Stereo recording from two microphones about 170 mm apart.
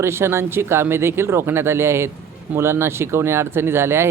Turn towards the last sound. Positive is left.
turn(degrees=-15)  # may be behind; listen again after turning